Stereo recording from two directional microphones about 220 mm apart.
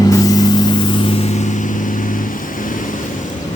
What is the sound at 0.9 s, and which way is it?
Vehicle, 25° left (ahead or behind).